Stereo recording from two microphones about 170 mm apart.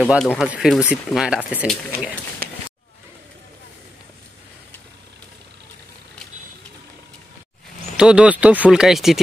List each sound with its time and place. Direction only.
0.0 s speech: centre (ahead or behind)
2.4 s a sound: 60° right (ahead or behind)
8.0 s speech: 5° right (ahead or behind)